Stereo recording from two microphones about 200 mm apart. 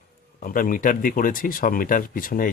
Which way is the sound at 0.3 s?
45° left (ahead or behind).